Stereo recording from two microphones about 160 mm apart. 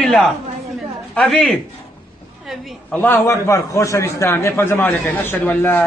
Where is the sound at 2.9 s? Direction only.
10° left (ahead or behind).